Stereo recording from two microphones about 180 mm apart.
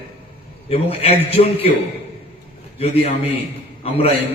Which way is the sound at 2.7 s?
35° left (ahead or behind).